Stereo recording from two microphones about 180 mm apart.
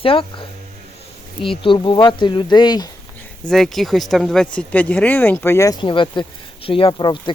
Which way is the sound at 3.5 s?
Centre (ahead or behind).